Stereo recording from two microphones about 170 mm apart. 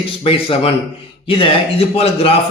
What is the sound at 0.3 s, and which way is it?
Speech, 35° left (ahead or behind).